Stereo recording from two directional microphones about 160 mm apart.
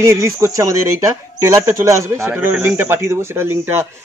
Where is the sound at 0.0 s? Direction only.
20° right (ahead or behind).